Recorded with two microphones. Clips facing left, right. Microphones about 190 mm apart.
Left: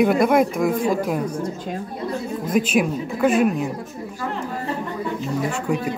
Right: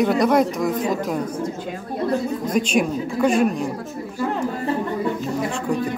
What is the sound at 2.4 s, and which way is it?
A woman's voice, 5° left (ahead or behind).